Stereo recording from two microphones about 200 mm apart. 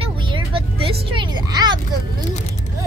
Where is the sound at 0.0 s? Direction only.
25° right (ahead or behind).